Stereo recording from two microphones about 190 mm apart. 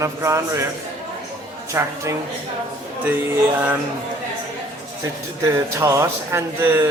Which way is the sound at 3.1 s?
10° right (ahead or behind).